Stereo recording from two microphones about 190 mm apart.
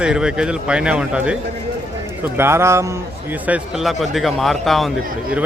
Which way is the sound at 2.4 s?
15° right (ahead or behind).